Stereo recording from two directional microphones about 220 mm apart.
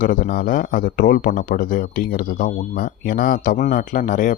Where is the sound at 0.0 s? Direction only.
40° left (ahead or behind).